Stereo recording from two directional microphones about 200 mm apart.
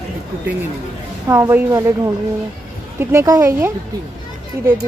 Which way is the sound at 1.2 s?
15° right (ahead or behind).